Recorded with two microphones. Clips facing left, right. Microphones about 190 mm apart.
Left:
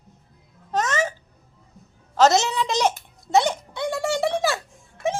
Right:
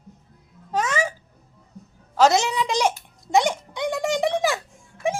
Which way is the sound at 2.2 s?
10° right (ahead or behind).